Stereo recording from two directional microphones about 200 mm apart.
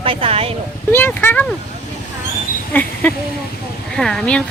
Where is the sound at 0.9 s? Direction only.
10° left (ahead or behind).